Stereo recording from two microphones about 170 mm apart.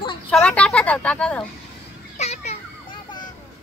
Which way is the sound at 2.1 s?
40° left (ahead or behind).